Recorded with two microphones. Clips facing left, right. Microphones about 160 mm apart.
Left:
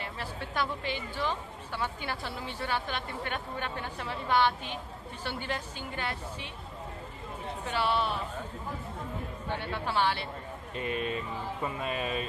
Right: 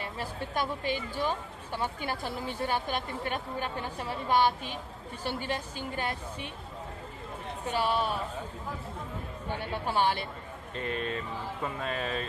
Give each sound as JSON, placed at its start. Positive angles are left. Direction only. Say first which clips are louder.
{"t": 0.6, "sound": "speech", "louder": "right 2 dB", "side_deg": -40}
{"t": 7.7, "sound": "speech", "louder": "right 1 dB", "side_deg": -40}
{"t": 9.9, "sound": "speech", "louder": "right 1 dB", "side_deg": -45}
{"t": 10.8, "sound": "speech", "louder": "left 1 dB", "side_deg": 10}